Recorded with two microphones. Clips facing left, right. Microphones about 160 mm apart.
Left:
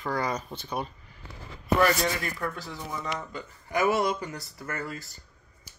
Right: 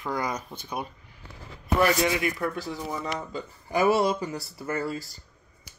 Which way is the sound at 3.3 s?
30° right (ahead or behind).